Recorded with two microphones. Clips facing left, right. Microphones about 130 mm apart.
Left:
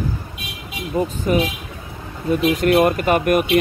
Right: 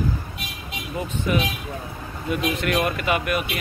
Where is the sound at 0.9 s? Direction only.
40° left (ahead or behind).